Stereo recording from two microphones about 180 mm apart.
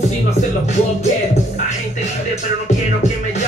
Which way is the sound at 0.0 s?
40° left (ahead or behind).